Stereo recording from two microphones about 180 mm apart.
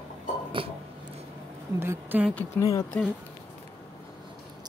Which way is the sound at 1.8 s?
10° right (ahead or behind).